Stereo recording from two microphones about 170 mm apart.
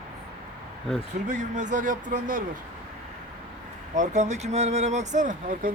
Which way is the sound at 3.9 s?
45° right (ahead or behind).